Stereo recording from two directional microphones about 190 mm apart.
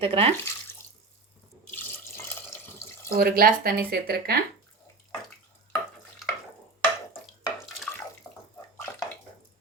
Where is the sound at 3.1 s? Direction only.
50° right (ahead or behind).